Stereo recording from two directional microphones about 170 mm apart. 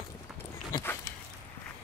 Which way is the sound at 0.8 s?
15° left (ahead or behind).